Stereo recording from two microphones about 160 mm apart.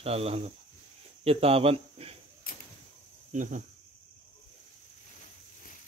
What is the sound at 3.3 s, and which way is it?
Speech, 50° right (ahead or behind).